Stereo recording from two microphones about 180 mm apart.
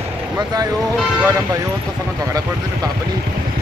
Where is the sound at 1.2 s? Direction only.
15° right (ahead or behind).